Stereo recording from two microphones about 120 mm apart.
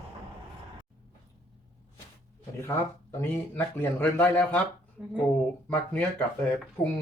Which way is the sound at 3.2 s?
20° left (ahead or behind).